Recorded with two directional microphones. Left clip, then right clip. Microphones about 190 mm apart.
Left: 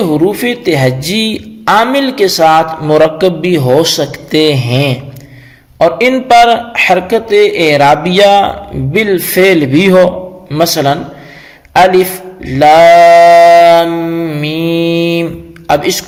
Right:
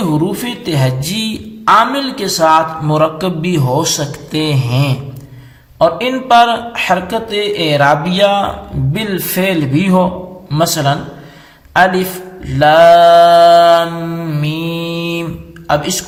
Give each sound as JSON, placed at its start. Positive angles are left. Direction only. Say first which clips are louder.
{"t": 0.1, "sound": "a man's voice", "louder": "left 6 dB", "side_deg": 30}
{"t": 12.5, "sound": "mantra", "louder": "left 3 dB", "side_deg": 30}
{"t": 15.8, "sound": "a man's voice", "louder": "left 6 dB", "side_deg": 30}